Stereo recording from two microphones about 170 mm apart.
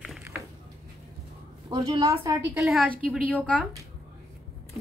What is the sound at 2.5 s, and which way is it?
Speech, 5° right (ahead or behind).